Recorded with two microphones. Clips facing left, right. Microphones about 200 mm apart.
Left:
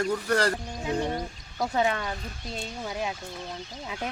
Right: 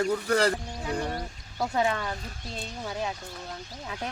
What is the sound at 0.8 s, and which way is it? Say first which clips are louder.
Speech: left 3 dB; 20° left (ahead or behind).